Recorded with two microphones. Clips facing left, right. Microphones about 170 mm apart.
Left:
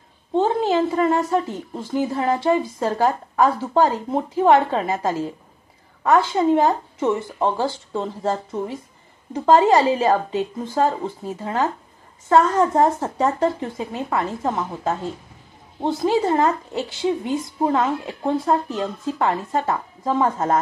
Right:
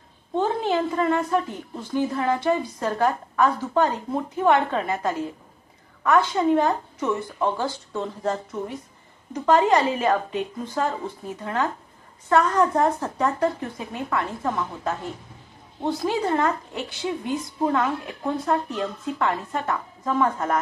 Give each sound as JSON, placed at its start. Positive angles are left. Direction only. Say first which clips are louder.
{"t": 0.3, "sound": "a woman's voice", "louder": "left 4 dB", "side_deg": 25}